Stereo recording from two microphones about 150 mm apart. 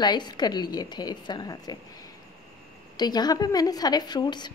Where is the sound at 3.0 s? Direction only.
25° left (ahead or behind).